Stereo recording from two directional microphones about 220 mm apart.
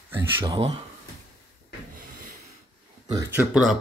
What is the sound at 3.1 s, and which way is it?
Speech, 5° right (ahead or behind).